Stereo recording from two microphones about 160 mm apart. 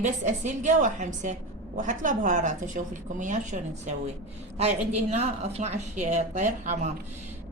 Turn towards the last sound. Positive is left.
turn(degrees=-50)  # may be behind; listen again after turning